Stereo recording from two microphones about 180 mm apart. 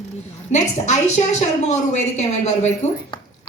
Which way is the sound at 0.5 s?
40° left (ahead or behind).